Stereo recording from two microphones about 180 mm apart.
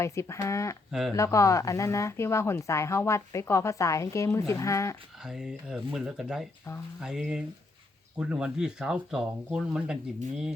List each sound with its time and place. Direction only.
0.0 s a woman's voice: 15° left (ahead or behind)
0.9 s speech: centre (ahead or behind)
1.1 s a woman's voice: 15° left (ahead or behind)
5.2 s speech: 5° right (ahead or behind)